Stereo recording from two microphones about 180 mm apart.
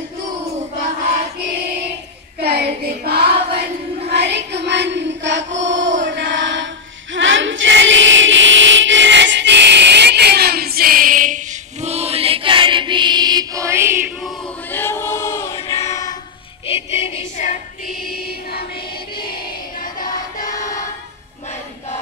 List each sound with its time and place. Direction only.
2.4 s child singing: 55° right (ahead or behind)
4.1 s music: 70° right (ahead or behind); by 5.9 s 90° right
6.0 s chant: 90° right
7.2 s choir: 90° right; by 14.1 s 15° right (ahead or behind)
14.7 s choir: 15° left (ahead or behind)
16.6 s music: 30° left (ahead or behind)
17.4 s female singing: 40° left (ahead or behind)
18.1 s music: 60° left (ahead or behind)
19.8 s music: 50° left (ahead or behind)